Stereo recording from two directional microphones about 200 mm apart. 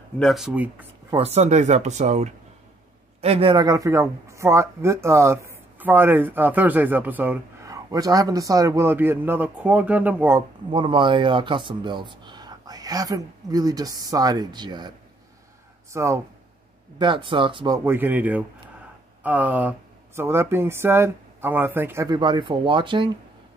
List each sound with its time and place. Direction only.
0.2 s speech: centre (ahead or behind)
1.1 s speech: 30° right (ahead or behind); by 10.4 s 10° right (ahead or behind)
10.7 s speech: 25° right (ahead or behind)
15.9 s speech: 15° right (ahead or behind)
17.8 s speech: 10° right (ahead or behind)